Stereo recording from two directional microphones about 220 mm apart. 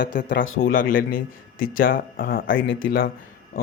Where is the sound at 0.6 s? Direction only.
40° left (ahead or behind).